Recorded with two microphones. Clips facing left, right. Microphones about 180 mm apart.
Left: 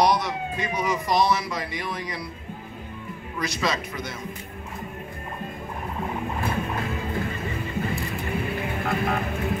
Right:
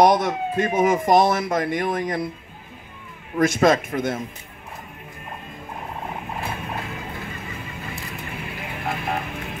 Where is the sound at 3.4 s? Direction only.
50° right (ahead or behind).